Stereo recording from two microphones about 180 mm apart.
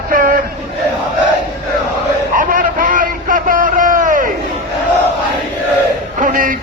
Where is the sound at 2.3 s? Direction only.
50° right (ahead or behind).